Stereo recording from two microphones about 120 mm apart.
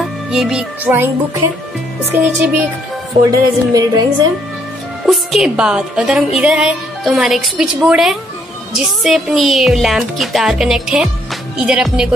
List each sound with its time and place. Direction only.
0.3 s speech: 5° right (ahead or behind)
0.9 s music: 20° right (ahead or behind)
3.3 s speech: 30° right (ahead or behind)
5.0 s speech: centre (ahead or behind)
11.5 s music: 5° right (ahead or behind)